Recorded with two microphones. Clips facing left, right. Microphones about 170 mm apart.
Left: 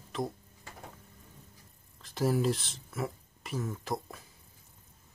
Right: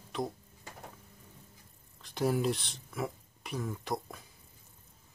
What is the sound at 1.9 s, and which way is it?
Speech, centre (ahead or behind).